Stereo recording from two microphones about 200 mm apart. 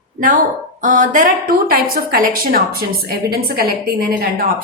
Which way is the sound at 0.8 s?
40° right (ahead or behind).